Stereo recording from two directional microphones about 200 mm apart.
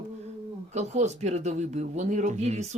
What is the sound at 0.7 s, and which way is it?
Speech, 35° right (ahead or behind).